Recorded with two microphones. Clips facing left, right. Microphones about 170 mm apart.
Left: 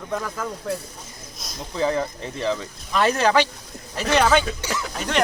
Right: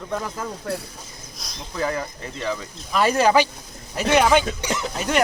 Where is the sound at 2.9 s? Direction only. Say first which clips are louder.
Right 1 dB; 5° right (ahead or behind); by 4.9 s 20° right (ahead or behind).